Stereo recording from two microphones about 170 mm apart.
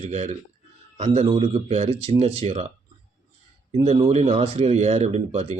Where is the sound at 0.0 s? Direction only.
40° right (ahead or behind).